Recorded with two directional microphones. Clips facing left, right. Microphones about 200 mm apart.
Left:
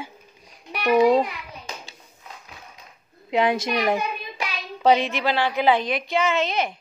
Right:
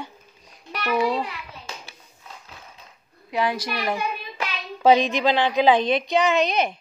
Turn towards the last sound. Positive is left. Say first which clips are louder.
# right 2 dB
turn(degrees=-20)  # may be behind; listen again after turning